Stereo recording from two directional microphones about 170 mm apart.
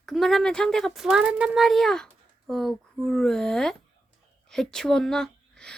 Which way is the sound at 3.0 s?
5° left (ahead or behind).